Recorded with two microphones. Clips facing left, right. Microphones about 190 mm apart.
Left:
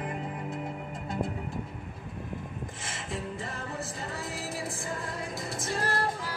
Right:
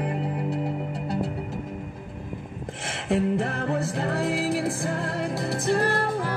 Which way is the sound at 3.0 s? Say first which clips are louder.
Right 14 dB; 65° right (ahead or behind).